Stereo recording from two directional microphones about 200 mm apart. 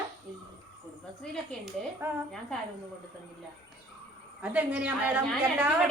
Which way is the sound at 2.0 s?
10° right (ahead or behind).